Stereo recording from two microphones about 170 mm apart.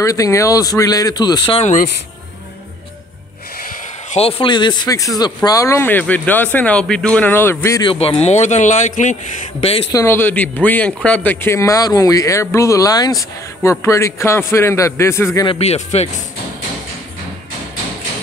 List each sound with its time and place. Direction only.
0.0 s speech: 20° left (ahead or behind)
1.6 s speech: 45° left (ahead or behind)
4.2 s speech: 35° left (ahead or behind); by 7.9 s 15° left (ahead or behind)
7.9 s speech: 35° left (ahead or behind)
9.6 s speech: 35° left (ahead or behind)
9.9 s speech: 15° left (ahead or behind)
15.4 s speech: 40° left (ahead or behind)